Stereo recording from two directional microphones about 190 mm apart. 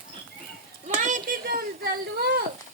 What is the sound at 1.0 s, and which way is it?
Speech, 45° right (ahead or behind).